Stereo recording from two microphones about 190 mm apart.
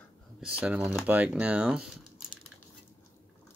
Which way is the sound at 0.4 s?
5° right (ahead or behind).